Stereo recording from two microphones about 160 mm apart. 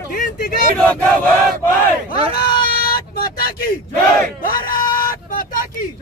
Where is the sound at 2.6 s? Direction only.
65° left (ahead or behind).